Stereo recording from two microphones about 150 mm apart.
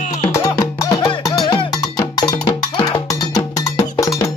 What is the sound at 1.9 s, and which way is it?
Cowbell, 25° left (ahead or behind).